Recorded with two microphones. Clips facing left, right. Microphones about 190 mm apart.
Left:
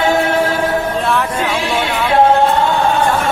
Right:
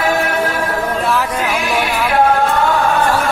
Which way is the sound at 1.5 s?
30° left (ahead or behind).